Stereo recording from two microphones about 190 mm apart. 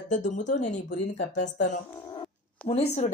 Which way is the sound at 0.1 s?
40° left (ahead or behind).